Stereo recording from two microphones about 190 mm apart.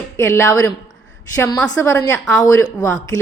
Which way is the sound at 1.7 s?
15° left (ahead or behind).